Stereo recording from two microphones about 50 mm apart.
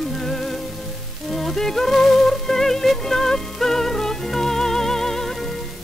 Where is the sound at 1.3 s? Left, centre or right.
Centre.